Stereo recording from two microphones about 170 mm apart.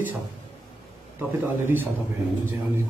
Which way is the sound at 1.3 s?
10° right (ahead or behind).